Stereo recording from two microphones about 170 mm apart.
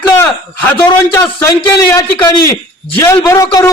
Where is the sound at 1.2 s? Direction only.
10° left (ahead or behind).